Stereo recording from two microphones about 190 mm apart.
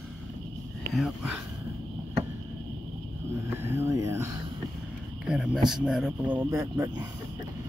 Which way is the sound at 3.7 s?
15° right (ahead or behind).